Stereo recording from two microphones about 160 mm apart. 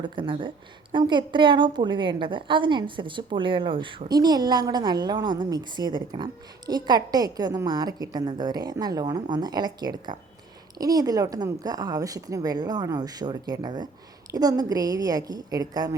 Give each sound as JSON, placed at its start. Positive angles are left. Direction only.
{"t": 0.0, "sound": "a woman's voice", "side_deg": -30}